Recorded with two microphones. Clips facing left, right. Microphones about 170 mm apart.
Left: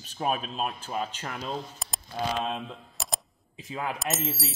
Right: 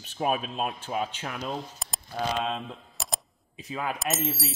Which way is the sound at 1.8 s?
Centre (ahead or behind).